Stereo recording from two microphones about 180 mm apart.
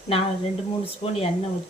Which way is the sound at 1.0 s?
30° left (ahead or behind).